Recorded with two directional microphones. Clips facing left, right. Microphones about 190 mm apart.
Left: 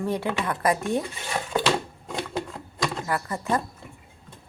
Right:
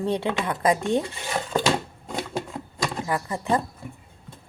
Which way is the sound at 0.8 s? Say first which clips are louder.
Right 3 dB; 30° right (ahead or behind).